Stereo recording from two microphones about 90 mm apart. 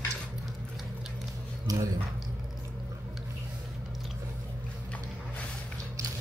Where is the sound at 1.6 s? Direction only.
40° right (ahead or behind).